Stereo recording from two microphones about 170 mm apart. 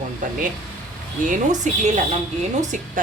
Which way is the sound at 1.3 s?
45° right (ahead or behind).